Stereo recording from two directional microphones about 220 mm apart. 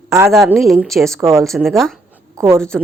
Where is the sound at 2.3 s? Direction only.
10° right (ahead or behind).